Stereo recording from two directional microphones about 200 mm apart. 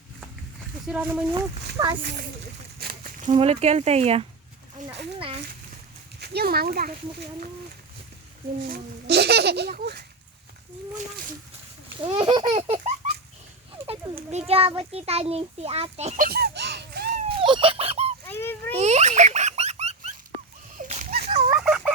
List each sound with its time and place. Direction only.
0.9 s speech: 5° right (ahead or behind)
1.8 s speech: 20° right (ahead or behind)
2.7 s a sound: 50° right (ahead or behind)
3.3 s speech: 30° right (ahead or behind)
6.1 s a child's voice: 55° right (ahead or behind)
8.7 s speech: 55° right (ahead or behind)
11.9 s baby laughter: 30° right (ahead or behind)
14.3 s a child's voice: 30° right (ahead or behind); by 17.2 s 55° right (ahead or behind)
17.4 s fowl: 25° right (ahead or behind)
18.3 s a sound: 10° left (ahead or behind)
18.7 s a sound: 35° right (ahead or behind)
21.2 s fowl: 30° right (ahead or behind)
21.6 s a sound: centre (ahead or behind)